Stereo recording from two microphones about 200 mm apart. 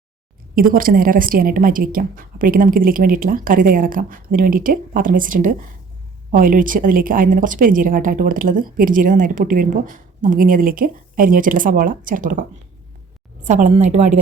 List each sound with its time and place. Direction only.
0.5 s a woman's voice: 45° right (ahead or behind)